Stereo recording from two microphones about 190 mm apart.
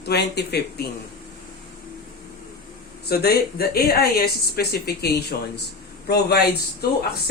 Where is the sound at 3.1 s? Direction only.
55° left (ahead or behind).